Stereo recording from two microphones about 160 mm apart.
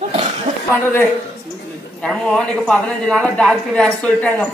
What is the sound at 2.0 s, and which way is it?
A man's voice, 5° left (ahead or behind).